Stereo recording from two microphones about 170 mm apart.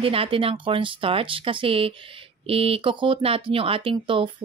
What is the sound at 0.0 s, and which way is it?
Speech, 35° right (ahead or behind).